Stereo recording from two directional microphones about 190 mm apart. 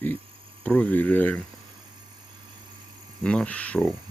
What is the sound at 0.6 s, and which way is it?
Speech, 5° left (ahead or behind).